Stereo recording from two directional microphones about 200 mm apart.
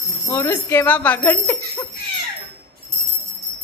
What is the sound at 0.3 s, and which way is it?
A woman's voice, 10° left (ahead or behind).